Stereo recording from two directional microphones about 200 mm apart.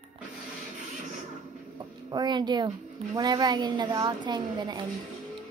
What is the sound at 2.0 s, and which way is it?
A woman's voice, 20° right (ahead or behind).